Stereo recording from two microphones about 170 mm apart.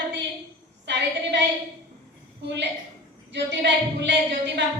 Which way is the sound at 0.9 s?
90° right.